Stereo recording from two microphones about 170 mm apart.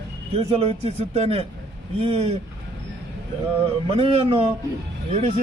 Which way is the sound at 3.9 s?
30° right (ahead or behind).